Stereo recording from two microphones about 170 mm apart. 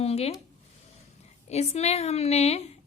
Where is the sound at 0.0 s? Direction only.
35° left (ahead or behind).